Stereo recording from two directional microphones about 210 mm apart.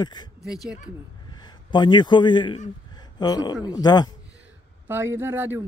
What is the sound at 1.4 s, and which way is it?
A man's voice, 20° left (ahead or behind).